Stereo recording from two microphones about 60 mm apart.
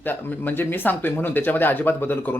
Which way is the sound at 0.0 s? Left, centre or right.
Left.